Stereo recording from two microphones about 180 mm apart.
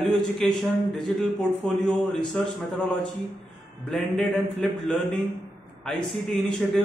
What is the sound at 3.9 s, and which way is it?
A man's voice, centre (ahead or behind).